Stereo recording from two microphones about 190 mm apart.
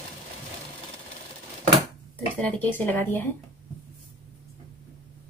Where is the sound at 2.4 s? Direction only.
10° left (ahead or behind).